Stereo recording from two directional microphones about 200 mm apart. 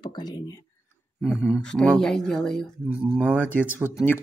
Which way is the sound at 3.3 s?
10° left (ahead or behind).